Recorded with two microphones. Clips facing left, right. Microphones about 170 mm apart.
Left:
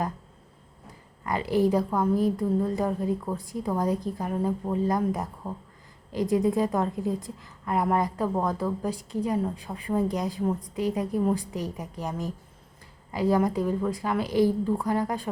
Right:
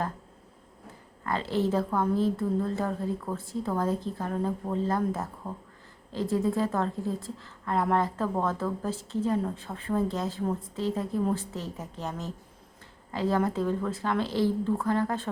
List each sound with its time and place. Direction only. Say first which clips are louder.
1.2 s a woman's voice: left 4 dB; 15° left (ahead or behind)